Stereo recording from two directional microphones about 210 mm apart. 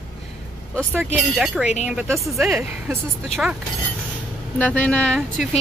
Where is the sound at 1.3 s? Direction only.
Centre (ahead or behind).